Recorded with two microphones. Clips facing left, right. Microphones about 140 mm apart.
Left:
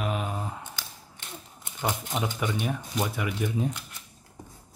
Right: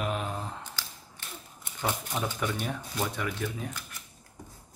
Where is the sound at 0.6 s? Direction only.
15° left (ahead or behind).